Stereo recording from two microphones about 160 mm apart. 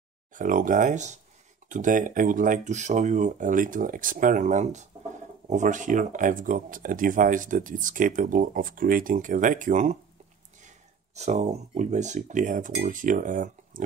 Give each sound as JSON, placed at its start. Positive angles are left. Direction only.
{"t": 0.3, "sound": "speech", "side_deg": -55}
{"t": 11.1, "sound": "speech", "side_deg": -45}